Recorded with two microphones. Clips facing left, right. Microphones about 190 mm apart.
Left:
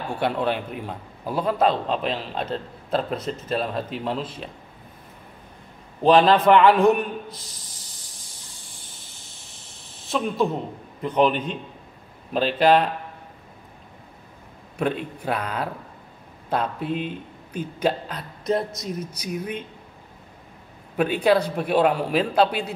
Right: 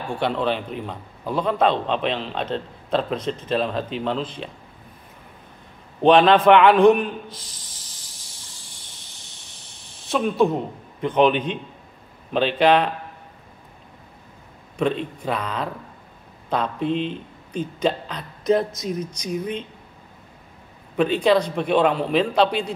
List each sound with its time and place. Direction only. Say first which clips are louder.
0.2 s a man's voice: right 1 dB; 5° left (ahead or behind)
6.0 s a man's voice: right 2 dB; centre (ahead or behind)
7.9 s a sound: even; centre (ahead or behind)
8.3 s cricket: even; centre (ahead or behind)
8.6 s snake: left 1 dB; centre (ahead or behind)
12.5 s a man's voice: even; 5° left (ahead or behind)
14.8 s a man's voice: right 2 dB; 10° left (ahead or behind)
15.2 s speech: even; 55° left (ahead or behind)
16.4 s a man's voice: right 2 dB; 5° left (ahead or behind)
21.0 s a man's voice: right 1 dB; 5° left (ahead or behind)